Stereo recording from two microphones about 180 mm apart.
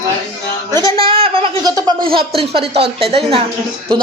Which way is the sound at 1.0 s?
30° right (ahead or behind).